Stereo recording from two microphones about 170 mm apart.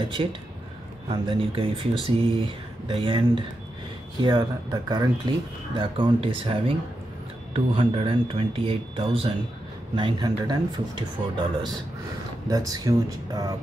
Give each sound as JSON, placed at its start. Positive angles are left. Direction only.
{"t": 0.2, "sound": "speech", "side_deg": -30}